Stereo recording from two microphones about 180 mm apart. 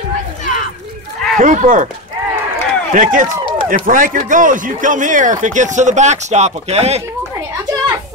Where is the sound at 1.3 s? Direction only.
45° right (ahead or behind).